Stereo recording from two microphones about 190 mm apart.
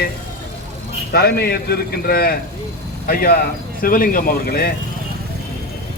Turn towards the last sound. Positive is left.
turn(degrees=50)  # may be behind; listen again after turning